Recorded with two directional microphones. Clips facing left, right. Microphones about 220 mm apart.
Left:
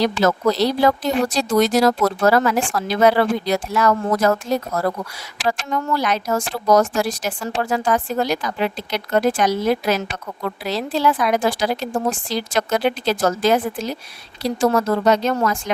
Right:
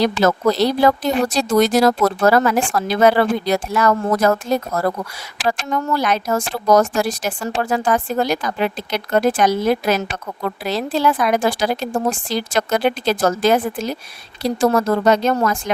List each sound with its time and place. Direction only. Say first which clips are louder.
0.0 s speech: right 2 dB; 50° right (ahead or behind)